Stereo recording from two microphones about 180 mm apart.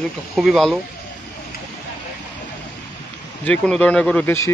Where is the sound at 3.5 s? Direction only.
5° left (ahead or behind).